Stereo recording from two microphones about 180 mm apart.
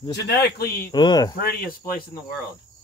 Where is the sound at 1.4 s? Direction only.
55° left (ahead or behind).